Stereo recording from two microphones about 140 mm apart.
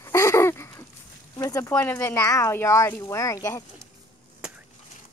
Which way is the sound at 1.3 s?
25° left (ahead or behind).